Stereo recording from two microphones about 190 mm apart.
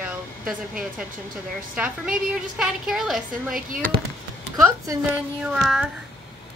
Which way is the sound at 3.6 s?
45° right (ahead or behind).